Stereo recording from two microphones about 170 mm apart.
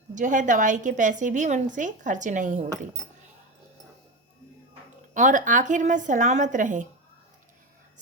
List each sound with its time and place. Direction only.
0.1 s a woman's voice: 50° right (ahead or behind)
5.1 s a woman's voice: 50° right (ahead or behind)